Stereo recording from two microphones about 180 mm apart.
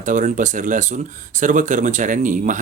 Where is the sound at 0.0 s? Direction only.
45° right (ahead or behind).